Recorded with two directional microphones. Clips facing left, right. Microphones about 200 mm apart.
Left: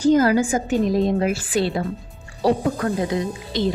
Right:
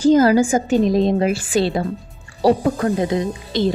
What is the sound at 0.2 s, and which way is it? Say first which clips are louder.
A woman's voice: right 4 dB; 30° right (ahead or behind).